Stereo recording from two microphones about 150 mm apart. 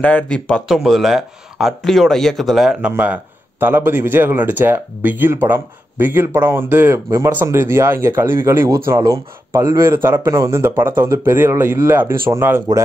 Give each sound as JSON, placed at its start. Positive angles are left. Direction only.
{"t": 0.0, "sound": "speech", "side_deg": 10}